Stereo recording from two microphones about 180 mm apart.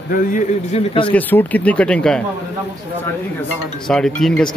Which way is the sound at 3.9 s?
5° left (ahead or behind).